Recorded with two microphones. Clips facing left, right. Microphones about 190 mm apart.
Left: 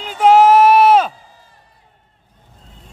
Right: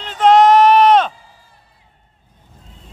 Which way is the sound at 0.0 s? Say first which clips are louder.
Even; 10° left (ahead or behind).